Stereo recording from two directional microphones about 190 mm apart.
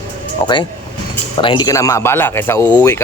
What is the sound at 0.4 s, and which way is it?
Speech, 25° left (ahead or behind).